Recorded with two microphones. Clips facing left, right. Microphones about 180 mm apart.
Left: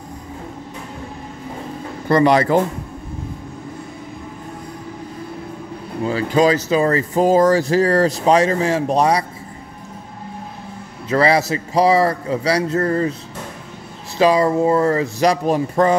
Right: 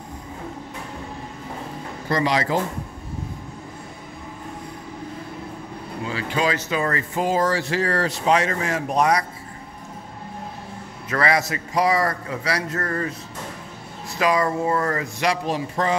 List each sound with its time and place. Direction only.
2.0 s speech: 60° left (ahead or behind)
6.0 s speech: 40° left (ahead or behind)
11.1 s a man's voice: 30° left (ahead or behind)
14.1 s a man's voice: 30° left (ahead or behind)
15.2 s speech: 50° left (ahead or behind)